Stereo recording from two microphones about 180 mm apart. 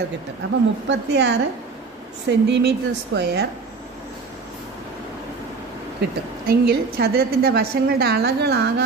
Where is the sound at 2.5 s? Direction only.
70° right (ahead or behind).